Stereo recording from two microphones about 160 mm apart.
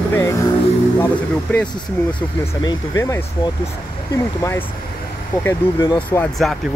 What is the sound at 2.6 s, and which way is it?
Speech, 25° left (ahead or behind).